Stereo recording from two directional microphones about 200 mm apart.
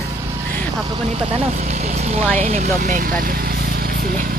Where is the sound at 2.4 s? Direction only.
40° right (ahead or behind).